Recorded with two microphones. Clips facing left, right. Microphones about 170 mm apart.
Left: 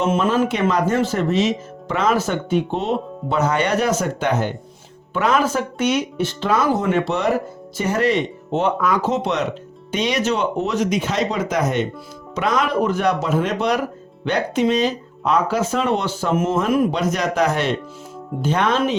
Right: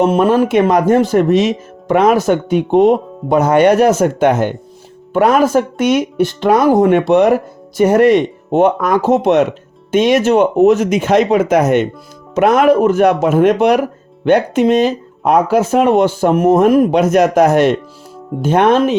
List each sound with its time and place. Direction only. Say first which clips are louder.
0.7 s speech: right 8 dB; 60° right (ahead or behind)
16.5 s speech: right 10 dB; 45° right (ahead or behind)
16.9 s speech: right 10 dB; 60° right (ahead or behind)